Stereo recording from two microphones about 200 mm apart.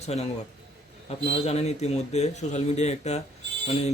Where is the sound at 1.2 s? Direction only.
30° left (ahead or behind).